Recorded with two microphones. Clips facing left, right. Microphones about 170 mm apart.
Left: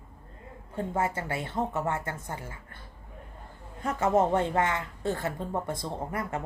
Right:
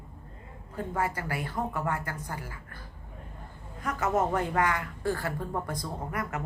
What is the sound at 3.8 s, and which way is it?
A woman's voice, 25° left (ahead or behind).